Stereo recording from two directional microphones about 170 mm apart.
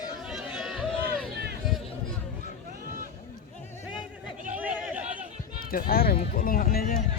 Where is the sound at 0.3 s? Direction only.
5° right (ahead or behind).